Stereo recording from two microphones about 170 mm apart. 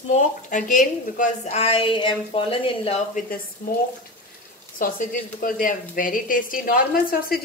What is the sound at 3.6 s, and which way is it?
Speech, 55° left (ahead or behind).